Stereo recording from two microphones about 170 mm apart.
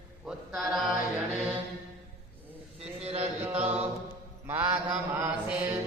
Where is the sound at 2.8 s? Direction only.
35° right (ahead or behind).